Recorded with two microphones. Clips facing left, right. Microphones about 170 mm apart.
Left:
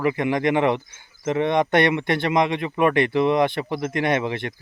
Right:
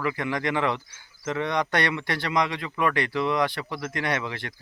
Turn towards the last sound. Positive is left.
turn(degrees=20)  # may be behind; listen again after turning